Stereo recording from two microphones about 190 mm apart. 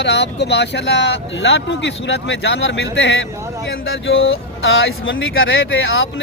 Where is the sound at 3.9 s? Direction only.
90° left.